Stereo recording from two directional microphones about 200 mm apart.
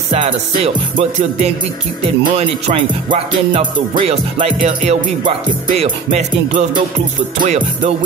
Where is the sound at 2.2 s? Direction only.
30° right (ahead or behind).